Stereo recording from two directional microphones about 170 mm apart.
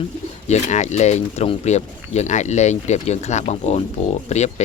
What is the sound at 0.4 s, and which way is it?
Speech, 40° left (ahead or behind).